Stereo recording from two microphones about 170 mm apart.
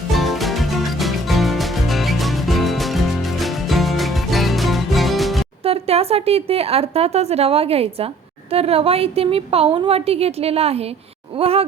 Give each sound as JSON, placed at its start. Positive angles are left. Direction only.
{"t": 0.1, "sound": "music", "side_deg": 0}
{"t": 5.6, "sound": "a woman's voice", "side_deg": -35}